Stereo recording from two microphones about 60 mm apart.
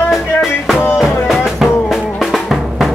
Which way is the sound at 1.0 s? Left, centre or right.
Centre.